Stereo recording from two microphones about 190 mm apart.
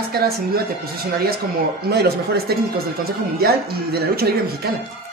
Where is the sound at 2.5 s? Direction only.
55° right (ahead or behind).